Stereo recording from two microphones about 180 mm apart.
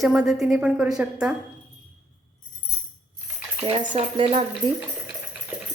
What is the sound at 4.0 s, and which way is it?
Speech, 30° right (ahead or behind).